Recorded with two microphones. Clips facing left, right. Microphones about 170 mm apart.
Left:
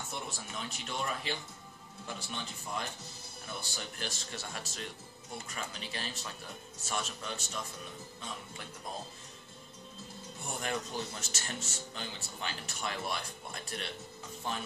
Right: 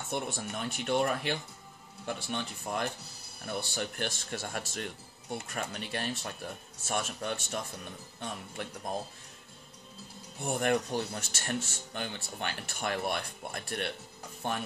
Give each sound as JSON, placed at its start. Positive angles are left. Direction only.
{"t": 0.1, "sound": "speech", "side_deg": -55}
{"t": 10.4, "sound": "speech", "side_deg": -60}